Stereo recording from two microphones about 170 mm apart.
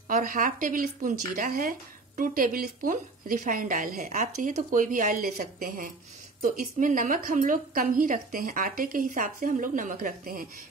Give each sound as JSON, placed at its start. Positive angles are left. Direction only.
{"t": 0.1, "sound": "a woman's voice", "side_deg": -55}